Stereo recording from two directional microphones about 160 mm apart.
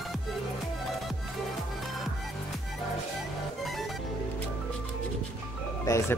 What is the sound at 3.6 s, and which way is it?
Music, centre (ahead or behind).